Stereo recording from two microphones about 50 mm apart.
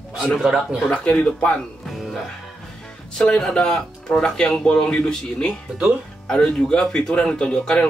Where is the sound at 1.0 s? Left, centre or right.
Left.